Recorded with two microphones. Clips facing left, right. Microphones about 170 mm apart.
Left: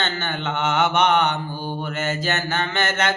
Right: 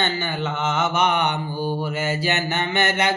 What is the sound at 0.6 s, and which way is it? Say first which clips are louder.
Mantra: left 3 dB; 5° right (ahead or behind).